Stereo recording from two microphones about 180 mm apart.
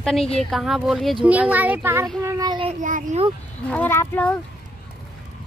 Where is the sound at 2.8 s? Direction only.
45° right (ahead or behind).